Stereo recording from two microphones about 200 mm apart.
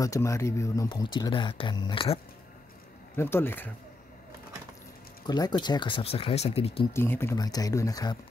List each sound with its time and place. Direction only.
0.0 s speech: 15° left (ahead or behind)
3.2 s speech: 10° left (ahead or behind)
5.2 s speech: 20° left (ahead or behind)
6.9 s speech: 10° left (ahead or behind)